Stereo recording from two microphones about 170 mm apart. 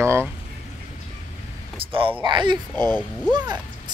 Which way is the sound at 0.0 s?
15° right (ahead or behind).